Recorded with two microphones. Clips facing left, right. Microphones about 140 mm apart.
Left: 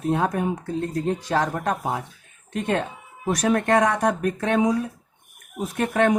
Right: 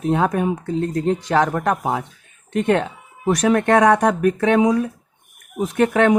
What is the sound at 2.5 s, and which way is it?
Speech, 75° right (ahead or behind).